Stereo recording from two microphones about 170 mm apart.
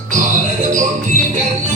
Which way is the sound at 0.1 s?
50° right (ahead or behind).